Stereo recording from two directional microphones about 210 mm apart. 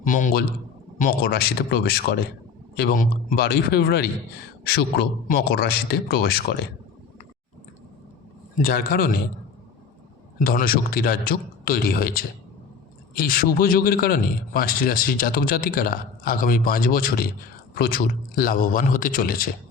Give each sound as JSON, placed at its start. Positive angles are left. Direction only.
{"t": 0.0, "sound": "a man's voice", "side_deg": 40}
{"t": 8.6, "sound": "a man's voice", "side_deg": 45}
{"t": 10.3, "sound": "a man's voice", "side_deg": 45}